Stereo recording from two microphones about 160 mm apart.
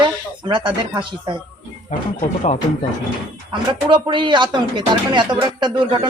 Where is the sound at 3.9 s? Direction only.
30° right (ahead or behind).